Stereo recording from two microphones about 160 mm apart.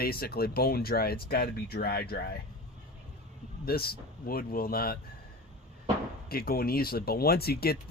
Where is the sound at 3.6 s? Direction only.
70° left (ahead or behind).